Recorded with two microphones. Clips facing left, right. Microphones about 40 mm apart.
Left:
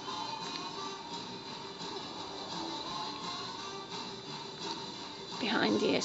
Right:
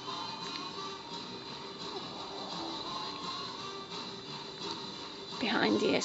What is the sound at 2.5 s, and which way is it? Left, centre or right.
Music, centre.